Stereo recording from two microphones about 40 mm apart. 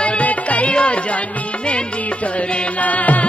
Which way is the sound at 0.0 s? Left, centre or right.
Left.